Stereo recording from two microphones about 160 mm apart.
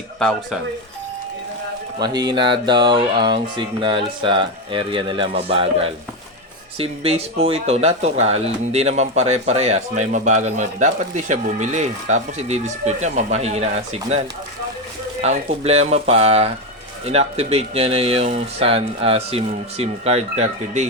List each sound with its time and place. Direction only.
0.2 s speech: 5° left (ahead or behind)
2.0 s speech: 25° right (ahead or behind); by 14.2 s 40° right (ahead or behind)
15.2 s speech: 40° right (ahead or behind)